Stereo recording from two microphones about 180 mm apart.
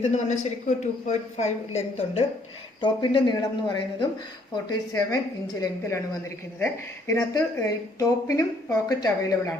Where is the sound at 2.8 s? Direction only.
25° left (ahead or behind).